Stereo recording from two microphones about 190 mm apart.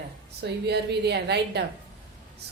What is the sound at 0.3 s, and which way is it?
A woman's voice, 60° right (ahead or behind).